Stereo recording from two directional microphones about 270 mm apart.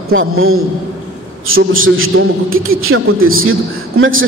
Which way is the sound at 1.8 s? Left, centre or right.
Right.